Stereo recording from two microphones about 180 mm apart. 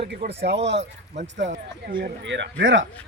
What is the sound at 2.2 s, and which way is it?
Speech, 90° right.